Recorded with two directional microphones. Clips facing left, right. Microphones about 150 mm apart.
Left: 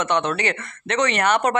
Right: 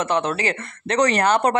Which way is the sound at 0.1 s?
30° right (ahead or behind).